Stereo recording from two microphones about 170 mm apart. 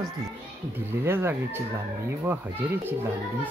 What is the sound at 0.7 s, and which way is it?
Speech, 15° right (ahead or behind).